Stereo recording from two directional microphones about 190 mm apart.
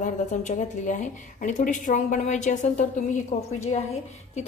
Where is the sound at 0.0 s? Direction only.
40° left (ahead or behind).